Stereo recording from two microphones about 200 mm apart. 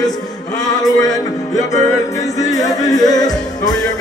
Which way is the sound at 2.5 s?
20° left (ahead or behind).